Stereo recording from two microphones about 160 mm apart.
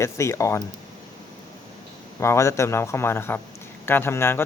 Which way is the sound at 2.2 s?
15° left (ahead or behind).